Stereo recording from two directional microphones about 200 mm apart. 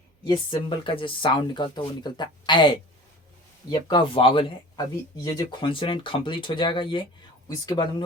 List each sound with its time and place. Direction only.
0.3 s speech: 25° left (ahead or behind)